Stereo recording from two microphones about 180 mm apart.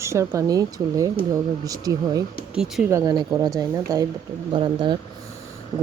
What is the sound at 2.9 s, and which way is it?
Speech, 20° right (ahead or behind).